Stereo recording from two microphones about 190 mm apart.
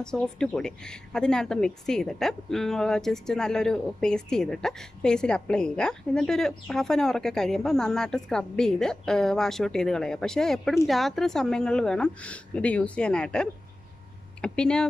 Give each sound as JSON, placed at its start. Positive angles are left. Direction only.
{"t": 0.0, "sound": "a woman's voice", "side_deg": 5}